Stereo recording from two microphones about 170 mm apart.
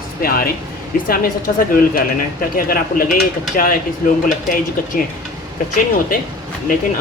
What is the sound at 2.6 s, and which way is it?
Speech, 55° left (ahead or behind).